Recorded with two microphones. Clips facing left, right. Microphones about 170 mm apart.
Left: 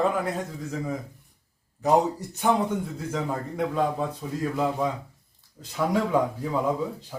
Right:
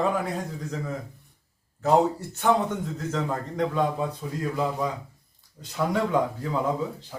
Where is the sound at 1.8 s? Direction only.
15° left (ahead or behind).